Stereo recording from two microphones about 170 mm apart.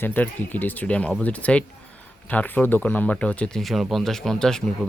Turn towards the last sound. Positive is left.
turn(degrees=5)  # may be behind; listen again after turning